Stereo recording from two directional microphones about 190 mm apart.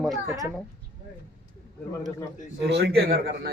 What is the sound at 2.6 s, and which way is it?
Speech, 65° right (ahead or behind).